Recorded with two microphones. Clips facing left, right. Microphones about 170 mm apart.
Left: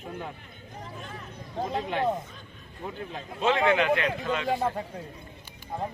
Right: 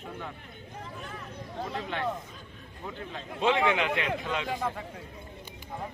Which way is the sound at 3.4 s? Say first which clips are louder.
Left 2 dB; 15° right (ahead or behind).